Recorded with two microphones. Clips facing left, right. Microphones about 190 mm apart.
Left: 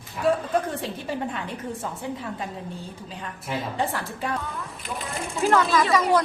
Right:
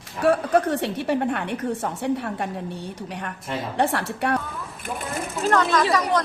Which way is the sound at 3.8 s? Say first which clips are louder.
Right 5 dB; 70° right (ahead or behind).